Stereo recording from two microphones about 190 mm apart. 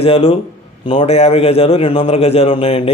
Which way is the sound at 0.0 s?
30° left (ahead or behind).